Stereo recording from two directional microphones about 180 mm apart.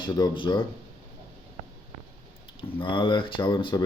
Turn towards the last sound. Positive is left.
turn(degrees=25)  # may be behind; listen again after turning